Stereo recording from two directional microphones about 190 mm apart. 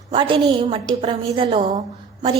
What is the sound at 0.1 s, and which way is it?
A woman's voice, 25° right (ahead or behind).